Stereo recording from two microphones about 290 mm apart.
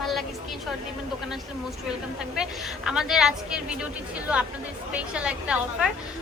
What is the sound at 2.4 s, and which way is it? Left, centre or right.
Speech, centre.